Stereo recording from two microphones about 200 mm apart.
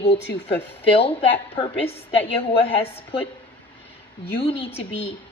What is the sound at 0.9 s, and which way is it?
A woman's voice, 25° left (ahead or behind).